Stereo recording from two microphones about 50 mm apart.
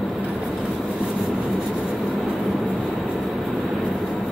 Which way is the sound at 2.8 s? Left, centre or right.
Centre.